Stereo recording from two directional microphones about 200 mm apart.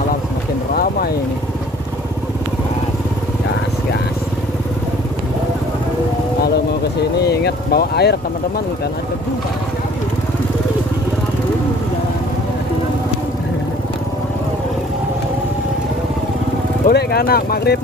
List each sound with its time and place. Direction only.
0.7 s vehicle: 50° left (ahead or behind)
7.2 s vehicle: 55° left (ahead or behind)
16.8 s speech: 50° left (ahead or behind)